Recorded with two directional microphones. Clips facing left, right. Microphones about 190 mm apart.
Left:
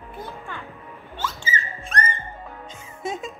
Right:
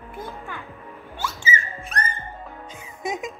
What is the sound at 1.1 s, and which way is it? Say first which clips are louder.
Whistling: right 1 dB; 10° right (ahead or behind).